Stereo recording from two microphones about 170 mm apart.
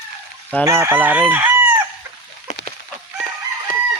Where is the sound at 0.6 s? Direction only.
15° right (ahead or behind).